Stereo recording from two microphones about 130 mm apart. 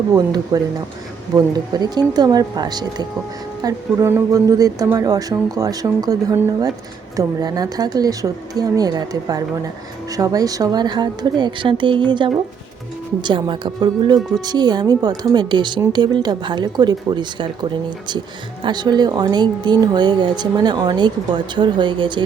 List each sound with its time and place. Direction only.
0.1 s speech: 30° right (ahead or behind)